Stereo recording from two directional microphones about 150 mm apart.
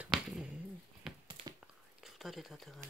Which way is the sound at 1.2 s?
30° right (ahead or behind).